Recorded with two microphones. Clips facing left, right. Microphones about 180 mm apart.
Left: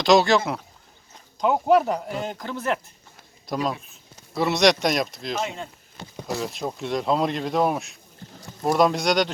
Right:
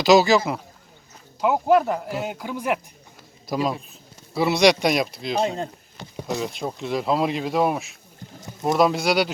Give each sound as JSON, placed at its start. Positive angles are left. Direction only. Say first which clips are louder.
{"t": 0.0, "sound": "speech", "louder": "right 2 dB", "side_deg": -5}
{"t": 5.4, "sound": "speech", "louder": "right 7 dB", "side_deg": -35}
{"t": 6.1, "sound": "speech", "louder": "right 2 dB", "side_deg": 0}